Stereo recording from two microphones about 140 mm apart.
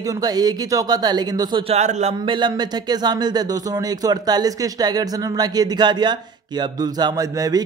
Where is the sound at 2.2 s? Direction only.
35° right (ahead or behind).